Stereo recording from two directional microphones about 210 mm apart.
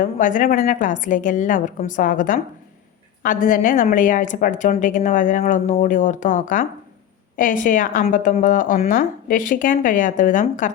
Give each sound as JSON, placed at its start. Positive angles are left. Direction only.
{"t": 0.0, "sound": "a woman's voice", "side_deg": 40}